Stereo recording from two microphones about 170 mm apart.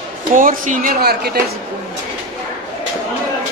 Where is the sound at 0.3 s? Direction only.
50° right (ahead or behind); by 1.4 s 65° right (ahead or behind).